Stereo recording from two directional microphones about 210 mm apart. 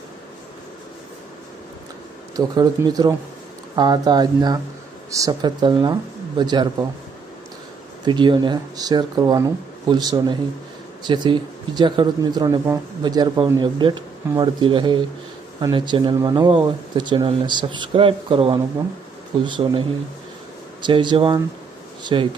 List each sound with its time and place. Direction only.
2.3 s speech: 20° right (ahead or behind)
8.0 s speech: 20° right (ahead or behind)
20.8 s speech: 20° right (ahead or behind)